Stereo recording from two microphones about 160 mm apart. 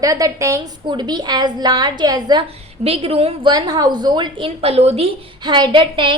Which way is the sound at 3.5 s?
25° right (ahead or behind).